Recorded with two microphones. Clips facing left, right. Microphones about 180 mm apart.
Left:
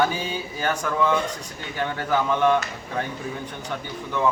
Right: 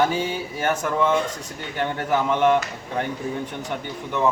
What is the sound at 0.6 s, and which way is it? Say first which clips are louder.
Speech: right 2 dB; 25° right (ahead or behind).